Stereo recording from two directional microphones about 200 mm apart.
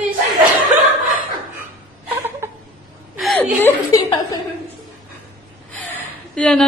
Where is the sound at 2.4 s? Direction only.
10° right (ahead or behind).